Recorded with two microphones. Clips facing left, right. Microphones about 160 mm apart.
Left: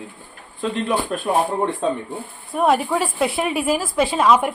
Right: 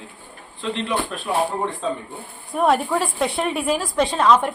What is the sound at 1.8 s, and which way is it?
Speech, 55° left (ahead or behind).